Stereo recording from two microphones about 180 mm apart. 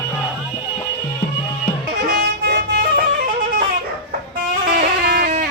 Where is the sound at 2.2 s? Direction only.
65° right (ahead or behind).